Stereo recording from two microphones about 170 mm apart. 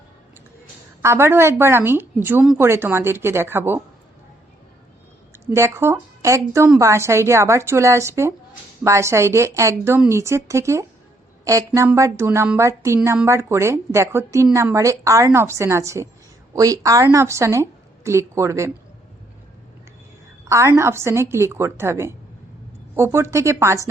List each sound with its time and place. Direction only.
1.0 s speech: 15° right (ahead or behind)
5.5 s a woman's voice: 15° right (ahead or behind)
20.4 s speech: 15° right (ahead or behind)